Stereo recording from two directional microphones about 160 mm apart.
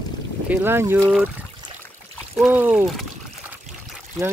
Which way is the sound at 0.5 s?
10° right (ahead or behind).